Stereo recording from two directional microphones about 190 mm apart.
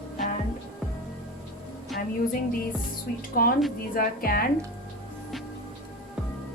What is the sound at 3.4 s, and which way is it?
A woman's voice, 50° left (ahead or behind).